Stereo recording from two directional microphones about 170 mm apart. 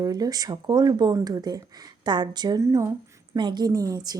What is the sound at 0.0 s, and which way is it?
A woman's voice, 20° right (ahead or behind).